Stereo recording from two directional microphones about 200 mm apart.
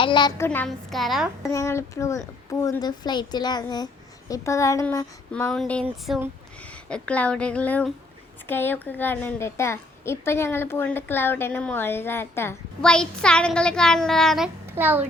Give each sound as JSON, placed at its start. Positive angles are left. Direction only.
{"t": 0.0, "sound": "a woman's voice", "side_deg": 20}
{"t": 1.5, "sound": "a woman's voice", "side_deg": 15}
{"t": 6.8, "sound": "a woman's voice", "side_deg": 5}